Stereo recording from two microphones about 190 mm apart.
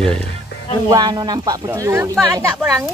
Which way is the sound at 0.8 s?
20° right (ahead or behind).